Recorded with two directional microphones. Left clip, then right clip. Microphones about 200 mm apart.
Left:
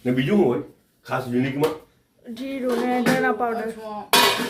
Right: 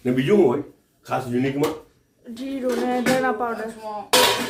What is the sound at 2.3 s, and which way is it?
Speech, centre (ahead or behind).